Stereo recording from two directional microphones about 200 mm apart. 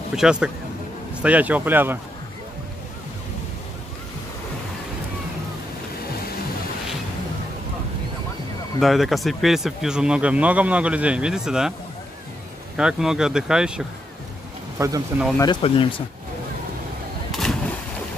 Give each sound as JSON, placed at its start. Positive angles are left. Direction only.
{"t": 0.1, "sound": "speech", "side_deg": -5}
{"t": 8.7, "sound": "speech", "side_deg": 0}
{"t": 12.7, "sound": "speech", "side_deg": -5}
{"t": 14.8, "sound": "speech", "side_deg": -15}
{"t": 15.3, "sound": "speech", "side_deg": 20}
{"t": 17.3, "sound": "a sound", "side_deg": 0}